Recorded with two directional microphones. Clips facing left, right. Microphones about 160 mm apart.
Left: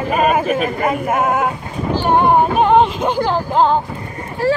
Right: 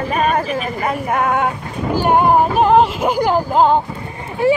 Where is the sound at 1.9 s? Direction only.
10° right (ahead or behind).